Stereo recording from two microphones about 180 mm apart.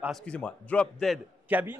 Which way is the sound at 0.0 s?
5° left (ahead or behind).